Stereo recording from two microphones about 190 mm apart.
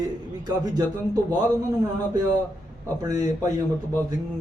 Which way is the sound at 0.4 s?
20° right (ahead or behind).